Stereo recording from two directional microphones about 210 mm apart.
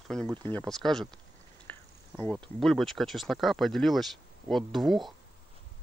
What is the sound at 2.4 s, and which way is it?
Speech, centre (ahead or behind).